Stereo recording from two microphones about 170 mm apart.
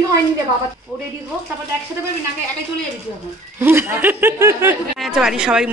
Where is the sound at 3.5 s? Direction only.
10° right (ahead or behind).